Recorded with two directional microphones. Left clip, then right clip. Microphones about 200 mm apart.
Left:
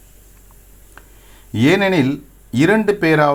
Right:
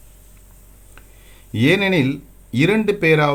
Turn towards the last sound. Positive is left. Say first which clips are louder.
# left 2 dB
turn(degrees=5)  # may be behind; listen again after turning